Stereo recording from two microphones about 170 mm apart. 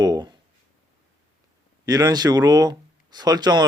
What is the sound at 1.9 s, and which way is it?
Speech, 20° right (ahead or behind).